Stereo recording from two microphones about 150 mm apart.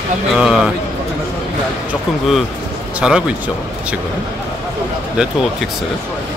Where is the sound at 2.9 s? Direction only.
5° right (ahead or behind).